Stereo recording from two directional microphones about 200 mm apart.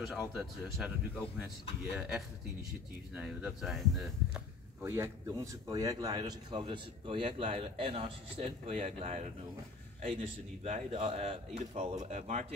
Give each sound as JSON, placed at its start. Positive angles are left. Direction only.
{"t": 0.4, "sound": "speech", "side_deg": 0}
{"t": 4.8, "sound": "a man's voice", "side_deg": -15}
{"t": 10.6, "sound": "speech", "side_deg": -30}